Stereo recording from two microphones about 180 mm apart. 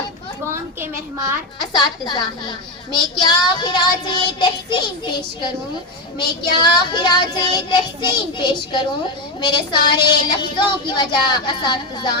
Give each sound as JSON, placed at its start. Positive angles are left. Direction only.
{"t": 1.7, "sound": "speech", "side_deg": 25}